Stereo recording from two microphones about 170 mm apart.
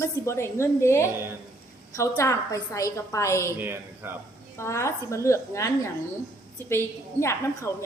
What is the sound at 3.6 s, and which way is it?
Speech, 10° right (ahead or behind).